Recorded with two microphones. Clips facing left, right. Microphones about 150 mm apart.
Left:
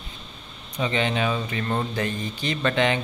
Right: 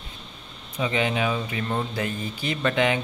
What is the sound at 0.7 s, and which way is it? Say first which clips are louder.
Speech: even; 5° right (ahead or behind).